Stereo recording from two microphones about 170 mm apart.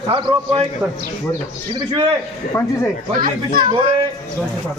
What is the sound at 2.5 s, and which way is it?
Speech, 15° left (ahead or behind).